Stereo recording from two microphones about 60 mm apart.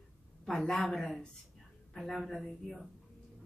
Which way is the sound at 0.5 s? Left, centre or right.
Centre.